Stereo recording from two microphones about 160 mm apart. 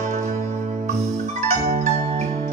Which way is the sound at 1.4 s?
45° right (ahead or behind).